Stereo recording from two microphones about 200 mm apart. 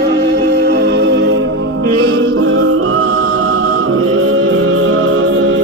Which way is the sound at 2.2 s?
90° right.